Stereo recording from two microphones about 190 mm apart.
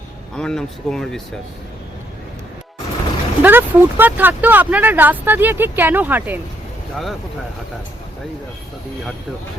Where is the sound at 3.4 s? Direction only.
10° right (ahead or behind).